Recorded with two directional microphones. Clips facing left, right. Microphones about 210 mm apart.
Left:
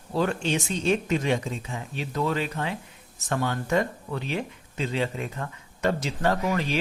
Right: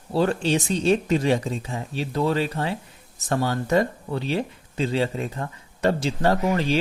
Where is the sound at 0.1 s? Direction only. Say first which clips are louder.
Right 4 dB; 35° right (ahead or behind).